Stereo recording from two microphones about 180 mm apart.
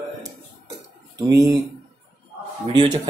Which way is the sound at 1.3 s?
20° right (ahead or behind).